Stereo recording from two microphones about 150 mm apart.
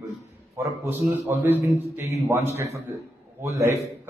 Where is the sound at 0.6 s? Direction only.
15° right (ahead or behind).